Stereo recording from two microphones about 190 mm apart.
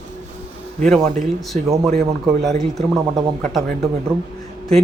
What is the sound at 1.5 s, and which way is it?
Speech, 40° right (ahead or behind).